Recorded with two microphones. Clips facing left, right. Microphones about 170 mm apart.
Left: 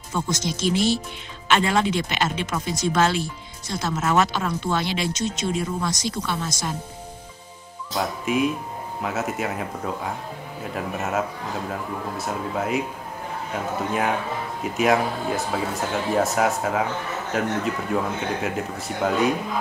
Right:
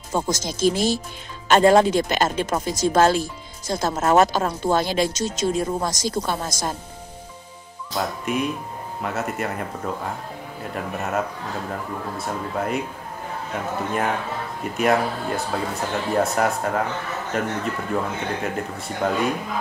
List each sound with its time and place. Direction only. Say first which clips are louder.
0.1 s speech: right 2 dB; 45° right (ahead or behind)
7.9 s speech: left 1 dB; centre (ahead or behind)
14.6 s speech: even; centre (ahead or behind)